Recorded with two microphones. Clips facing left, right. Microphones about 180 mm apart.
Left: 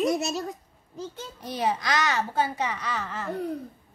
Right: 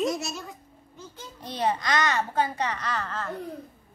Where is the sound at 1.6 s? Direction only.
5° left (ahead or behind).